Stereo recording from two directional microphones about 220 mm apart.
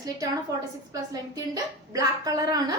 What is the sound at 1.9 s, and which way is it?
Speech, 15° right (ahead or behind).